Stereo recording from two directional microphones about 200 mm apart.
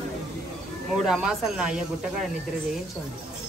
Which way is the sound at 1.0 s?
Centre (ahead or behind).